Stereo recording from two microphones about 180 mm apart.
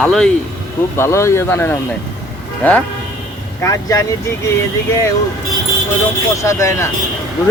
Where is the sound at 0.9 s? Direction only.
15° left (ahead or behind).